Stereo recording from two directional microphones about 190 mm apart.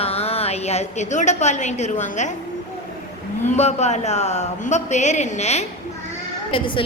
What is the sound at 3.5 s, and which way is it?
A woman's voice, 35° left (ahead or behind).